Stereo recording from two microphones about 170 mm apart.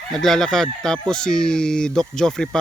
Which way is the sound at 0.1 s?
Centre (ahead or behind).